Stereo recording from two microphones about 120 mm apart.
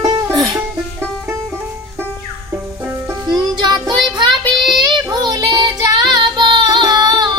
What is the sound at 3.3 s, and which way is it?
Music, 35° right (ahead or behind).